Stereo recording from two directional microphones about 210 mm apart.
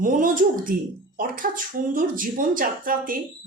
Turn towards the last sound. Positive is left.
turn(degrees=-40)  # may be behind; listen again after turning